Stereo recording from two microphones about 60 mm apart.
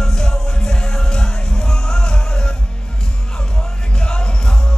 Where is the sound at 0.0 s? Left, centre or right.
Centre.